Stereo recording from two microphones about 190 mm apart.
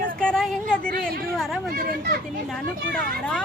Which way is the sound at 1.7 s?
50° right (ahead or behind).